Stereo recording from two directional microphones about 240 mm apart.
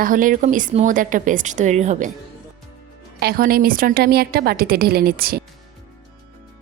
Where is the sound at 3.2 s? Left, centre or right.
Right.